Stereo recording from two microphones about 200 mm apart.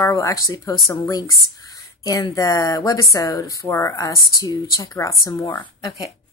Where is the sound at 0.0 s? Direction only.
15° left (ahead or behind).